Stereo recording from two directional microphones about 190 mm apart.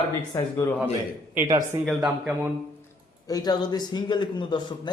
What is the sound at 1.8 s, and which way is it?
Speech, 5° right (ahead or behind).